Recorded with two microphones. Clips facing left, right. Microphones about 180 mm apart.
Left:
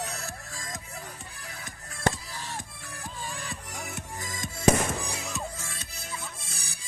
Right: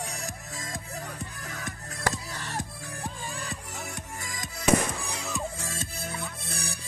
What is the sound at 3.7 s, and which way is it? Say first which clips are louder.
Music: even; centre (ahead or behind).